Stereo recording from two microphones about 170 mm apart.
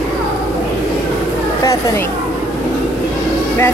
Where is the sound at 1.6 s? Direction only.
15° left (ahead or behind).